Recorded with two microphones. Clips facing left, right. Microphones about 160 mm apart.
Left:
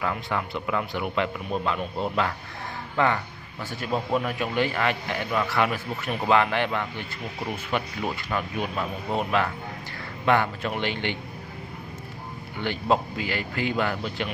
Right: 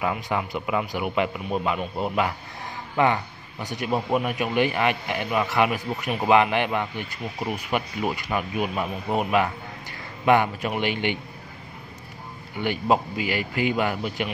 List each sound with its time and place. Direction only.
0.0 s a man's voice: 15° right (ahead or behind)
12.5 s a man's voice: 15° right (ahead or behind)